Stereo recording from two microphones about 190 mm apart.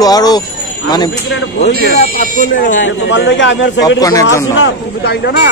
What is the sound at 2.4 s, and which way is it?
Speech, 45° left (ahead or behind).